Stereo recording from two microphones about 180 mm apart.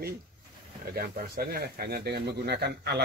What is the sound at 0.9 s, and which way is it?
Speech, 55° right (ahead or behind).